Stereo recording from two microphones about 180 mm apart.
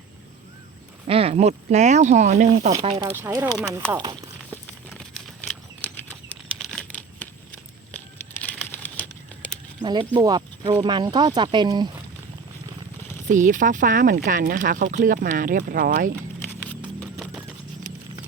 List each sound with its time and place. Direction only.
1.0 s speech: 30° right (ahead or behind)
3.0 s speech: 15° right (ahead or behind)
4.6 s patter: 5° left (ahead or behind)
9.8 s speech: 25° right (ahead or behind)
13.2 s speech: 45° right (ahead or behind)
16.6 s a sound: centre (ahead or behind)